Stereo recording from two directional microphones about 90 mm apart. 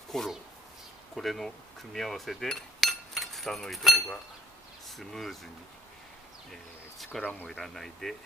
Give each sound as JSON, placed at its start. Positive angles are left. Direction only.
{"t": 0.1, "sound": "speech", "side_deg": 5}
{"t": 1.1, "sound": "cutlery", "side_deg": 0}
{"t": 4.8, "sound": "speech", "side_deg": 0}
{"t": 7.2, "sound": "speech", "side_deg": 20}
{"t": 7.4, "sound": "speech", "side_deg": 5}